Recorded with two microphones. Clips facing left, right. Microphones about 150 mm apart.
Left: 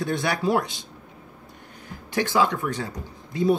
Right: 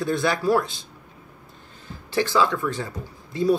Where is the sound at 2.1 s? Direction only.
20° left (ahead or behind).